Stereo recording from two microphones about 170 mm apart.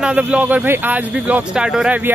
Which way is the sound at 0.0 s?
5° right (ahead or behind).